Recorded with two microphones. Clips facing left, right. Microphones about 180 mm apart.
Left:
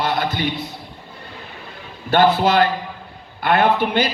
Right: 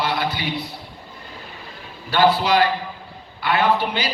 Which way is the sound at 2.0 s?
50° left (ahead or behind).